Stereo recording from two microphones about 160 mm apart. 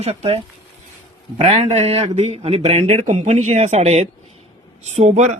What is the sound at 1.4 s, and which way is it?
A man's voice, 40° right (ahead or behind).